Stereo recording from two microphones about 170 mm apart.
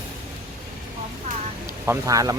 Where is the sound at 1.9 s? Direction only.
20° right (ahead or behind).